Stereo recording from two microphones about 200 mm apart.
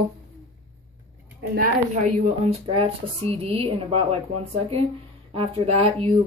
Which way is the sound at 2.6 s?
30° right (ahead or behind).